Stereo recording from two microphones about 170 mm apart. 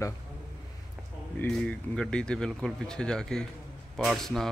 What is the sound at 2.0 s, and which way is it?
Speech, 5° left (ahead or behind).